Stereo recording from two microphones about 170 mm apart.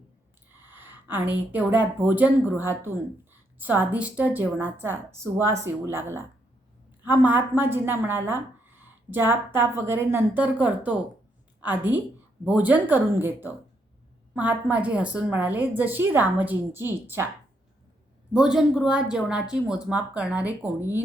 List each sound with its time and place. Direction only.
0.6 s a woman's voice: 10° right (ahead or behind)
18.3 s a woman's voice: 5° right (ahead or behind)